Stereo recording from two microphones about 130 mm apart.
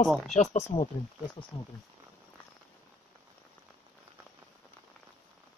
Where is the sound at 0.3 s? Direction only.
60° left (ahead or behind); by 1.7 s 45° left (ahead or behind).